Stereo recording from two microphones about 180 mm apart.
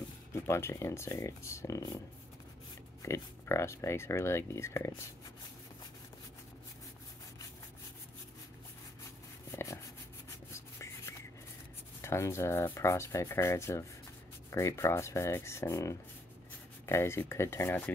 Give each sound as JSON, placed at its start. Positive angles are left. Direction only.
{"t": 0.3, "sound": "speech", "side_deg": 15}
{"t": 3.0, "sound": "speech", "side_deg": 15}
{"t": 9.5, "sound": "a sound", "side_deg": 15}
{"t": 12.0, "sound": "speech", "side_deg": 15}